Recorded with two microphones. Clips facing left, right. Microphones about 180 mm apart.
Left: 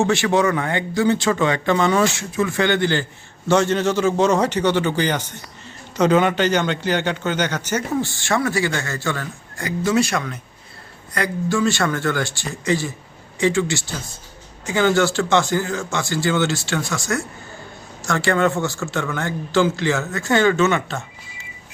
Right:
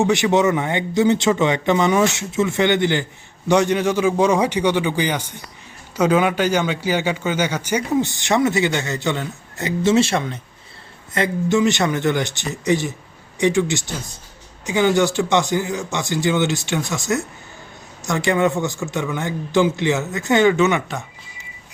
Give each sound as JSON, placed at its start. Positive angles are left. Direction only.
{"t": 0.0, "sound": "a man's voice", "side_deg": -20}